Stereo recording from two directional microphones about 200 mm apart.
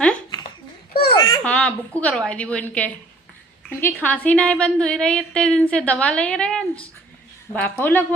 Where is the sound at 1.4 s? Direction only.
5° left (ahead or behind).